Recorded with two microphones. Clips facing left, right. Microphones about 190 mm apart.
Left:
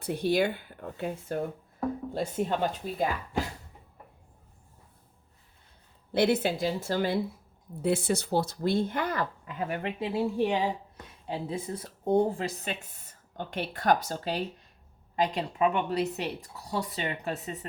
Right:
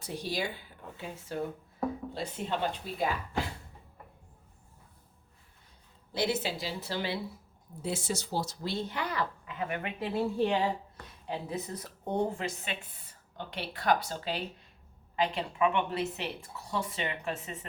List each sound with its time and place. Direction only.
0.0 s speech: 55° left (ahead or behind)
6.1 s speech: 60° left (ahead or behind)
7.8 s speech: 60° left (ahead or behind); by 9.9 s 35° left (ahead or behind)
10.0 s a woman's voice: 15° left (ahead or behind)
10.9 s a woman's voice: 30° left (ahead or behind)